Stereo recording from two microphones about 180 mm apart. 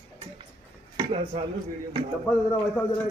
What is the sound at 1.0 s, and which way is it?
Speech, 30° right (ahead or behind).